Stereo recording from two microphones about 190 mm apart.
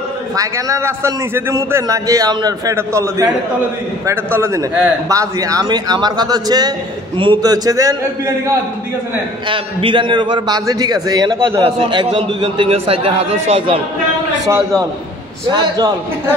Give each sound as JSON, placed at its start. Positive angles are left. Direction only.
{"t": 0.4, "sound": "a man's voice", "side_deg": -15}
{"t": 9.5, "sound": "a man's voice", "side_deg": -25}
{"t": 14.4, "sound": "a man's voice", "side_deg": -15}